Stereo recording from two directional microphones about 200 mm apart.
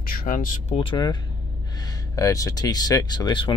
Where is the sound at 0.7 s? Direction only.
25° left (ahead or behind).